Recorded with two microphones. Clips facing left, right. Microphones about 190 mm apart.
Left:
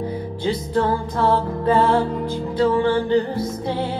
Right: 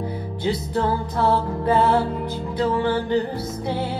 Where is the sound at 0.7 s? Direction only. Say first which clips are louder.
Left 4 dB; 10° right (ahead or behind).